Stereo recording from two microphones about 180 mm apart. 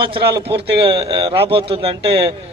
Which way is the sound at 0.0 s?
30° right (ahead or behind).